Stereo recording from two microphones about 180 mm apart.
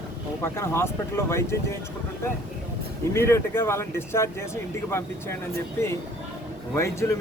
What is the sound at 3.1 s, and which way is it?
Speech, 15° left (ahead or behind).